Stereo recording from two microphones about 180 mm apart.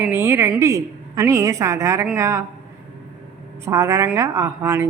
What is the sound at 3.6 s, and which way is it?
A woman's voice, 15° right (ahead or behind).